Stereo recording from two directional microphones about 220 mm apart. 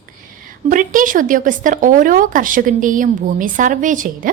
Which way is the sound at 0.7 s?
35° right (ahead or behind).